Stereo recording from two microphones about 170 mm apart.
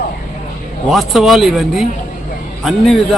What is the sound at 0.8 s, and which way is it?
A man's voice, centre (ahead or behind).